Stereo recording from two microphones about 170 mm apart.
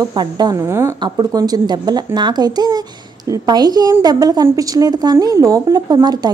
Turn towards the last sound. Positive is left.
turn(degrees=-25)  # may be behind; listen again after turning